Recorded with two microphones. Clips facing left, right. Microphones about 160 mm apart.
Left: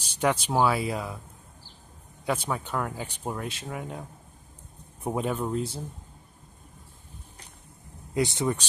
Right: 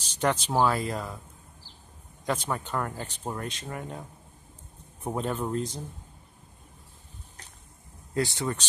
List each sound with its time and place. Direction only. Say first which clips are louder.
0.0 s a sound: left 1 dB; 10° left (ahead or behind)
0.6 s speech: even; 10° left (ahead or behind)
2.2 s speech: left 1 dB; 10° left (ahead or behind)
5.0 s speech: left 2 dB; 10° left (ahead or behind)
8.1 s speech: left 3 dB; 20° left (ahead or behind)